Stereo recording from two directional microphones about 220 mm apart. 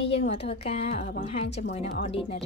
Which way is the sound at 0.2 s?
30° left (ahead or behind).